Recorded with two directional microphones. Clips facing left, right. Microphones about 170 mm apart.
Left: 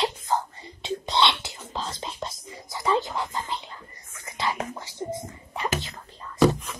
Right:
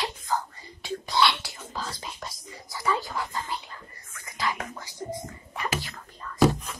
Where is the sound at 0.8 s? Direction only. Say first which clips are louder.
Left 1 dB; 20° left (ahead or behind).